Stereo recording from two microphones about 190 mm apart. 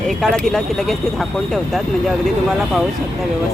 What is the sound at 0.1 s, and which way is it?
Speech, 5° left (ahead or behind).